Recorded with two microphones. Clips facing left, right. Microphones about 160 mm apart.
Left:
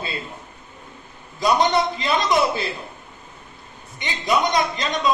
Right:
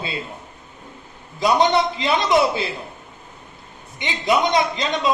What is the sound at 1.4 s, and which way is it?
Speech, 20° right (ahead or behind).